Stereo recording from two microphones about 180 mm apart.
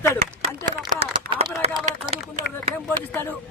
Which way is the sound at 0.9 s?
35° right (ahead or behind).